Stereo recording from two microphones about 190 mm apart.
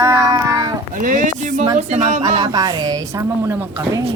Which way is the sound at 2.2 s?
20° right (ahead or behind).